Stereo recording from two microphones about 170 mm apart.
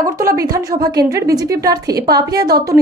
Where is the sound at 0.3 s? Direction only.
20° right (ahead or behind).